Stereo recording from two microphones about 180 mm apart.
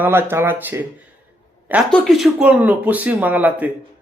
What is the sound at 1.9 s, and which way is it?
Speech, centre (ahead or behind).